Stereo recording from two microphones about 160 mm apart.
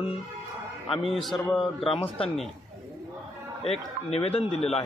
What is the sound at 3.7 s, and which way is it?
A man's voice, 40° left (ahead or behind).